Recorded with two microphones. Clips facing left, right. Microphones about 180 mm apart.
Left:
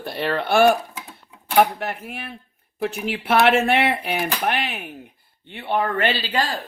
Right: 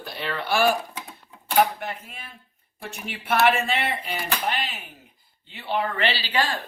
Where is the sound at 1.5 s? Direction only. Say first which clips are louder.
Left 3 dB; 65° left (ahead or behind); by 6.6 s 40° left (ahead or behind).